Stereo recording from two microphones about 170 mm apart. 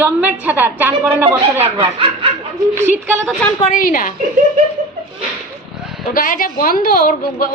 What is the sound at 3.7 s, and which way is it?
Speech, 55° left (ahead or behind).